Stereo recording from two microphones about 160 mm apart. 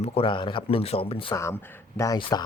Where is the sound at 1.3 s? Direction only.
15° left (ahead or behind).